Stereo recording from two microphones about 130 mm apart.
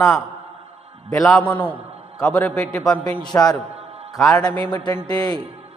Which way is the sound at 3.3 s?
20° left (ahead or behind).